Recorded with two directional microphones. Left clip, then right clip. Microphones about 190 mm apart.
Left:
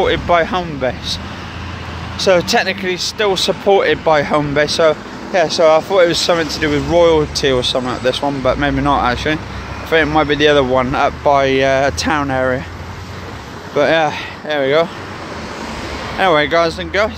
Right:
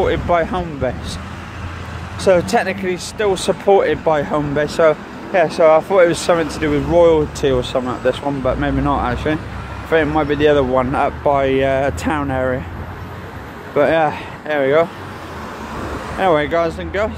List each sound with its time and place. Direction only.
0.0 s speech: 5° left (ahead or behind)
2.2 s speech: centre (ahead or behind)
13.7 s speech: 10° left (ahead or behind)
16.2 s speech: 10° left (ahead or behind)